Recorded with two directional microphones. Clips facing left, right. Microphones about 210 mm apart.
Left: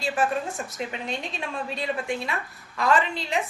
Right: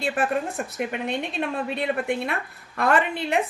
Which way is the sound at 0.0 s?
60° right (ahead or behind).